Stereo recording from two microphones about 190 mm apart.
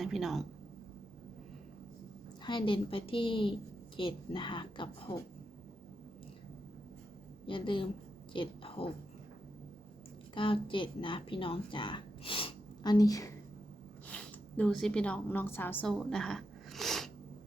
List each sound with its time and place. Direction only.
0.0 s speech: centre (ahead or behind)
2.4 s a woman's voice: 25° left (ahead or behind)
7.4 s a woman's voice: 25° left (ahead or behind)
10.3 s a woman's voice: 25° left (ahead or behind)
14.1 s a woman's voice: 5° left (ahead or behind)